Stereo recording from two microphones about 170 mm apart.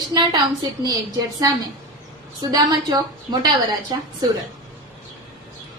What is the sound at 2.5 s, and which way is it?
A woman's voice, 25° right (ahead or behind).